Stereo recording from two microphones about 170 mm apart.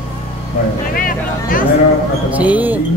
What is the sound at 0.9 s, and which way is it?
Speech, 55° left (ahead or behind).